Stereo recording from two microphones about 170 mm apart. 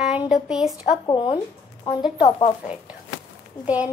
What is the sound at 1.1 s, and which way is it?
A woman's voice, 30° left (ahead or behind).